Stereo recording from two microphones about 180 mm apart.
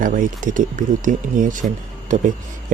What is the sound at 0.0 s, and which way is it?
Speech, 45° right (ahead or behind).